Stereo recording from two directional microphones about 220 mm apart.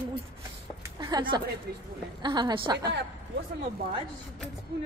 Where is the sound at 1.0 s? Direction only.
20° right (ahead or behind).